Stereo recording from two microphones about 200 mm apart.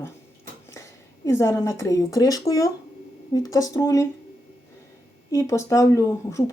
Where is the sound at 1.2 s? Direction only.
15° left (ahead or behind).